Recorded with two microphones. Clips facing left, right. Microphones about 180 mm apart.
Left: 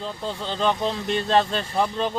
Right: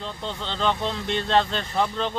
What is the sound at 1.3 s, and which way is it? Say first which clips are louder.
Speech: left 1 dB; 35° left (ahead or behind).